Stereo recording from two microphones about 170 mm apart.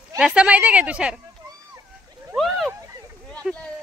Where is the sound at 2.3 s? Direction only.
Centre (ahead or behind).